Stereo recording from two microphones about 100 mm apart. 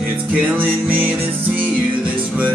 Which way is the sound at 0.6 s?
15° right (ahead or behind).